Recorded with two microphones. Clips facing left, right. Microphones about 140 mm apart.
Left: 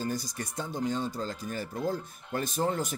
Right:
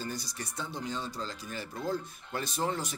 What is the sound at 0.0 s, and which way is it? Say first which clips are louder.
Speech: left 5 dB; 45° left (ahead or behind).